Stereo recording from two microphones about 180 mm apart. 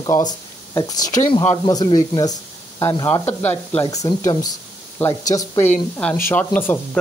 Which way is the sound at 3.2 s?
10° left (ahead or behind).